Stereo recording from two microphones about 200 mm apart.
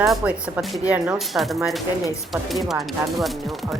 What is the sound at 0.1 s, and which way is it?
Speech, 5° right (ahead or behind).